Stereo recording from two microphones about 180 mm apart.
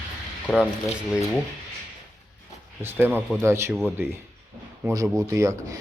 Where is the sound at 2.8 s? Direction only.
10° right (ahead or behind).